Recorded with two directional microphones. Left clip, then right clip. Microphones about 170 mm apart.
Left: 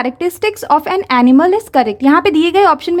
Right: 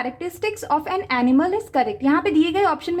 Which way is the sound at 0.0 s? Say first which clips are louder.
Left 9 dB; 40° left (ahead or behind).